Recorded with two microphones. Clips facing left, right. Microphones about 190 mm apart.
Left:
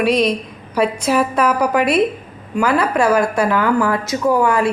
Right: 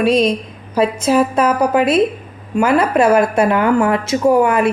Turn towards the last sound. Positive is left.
turn(degrees=-20)  # may be behind; listen again after turning